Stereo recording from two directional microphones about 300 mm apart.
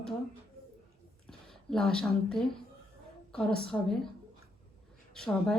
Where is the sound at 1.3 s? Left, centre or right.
Centre.